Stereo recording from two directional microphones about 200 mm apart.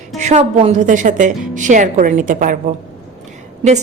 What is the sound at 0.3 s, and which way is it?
A woman's voice, 35° right (ahead or behind).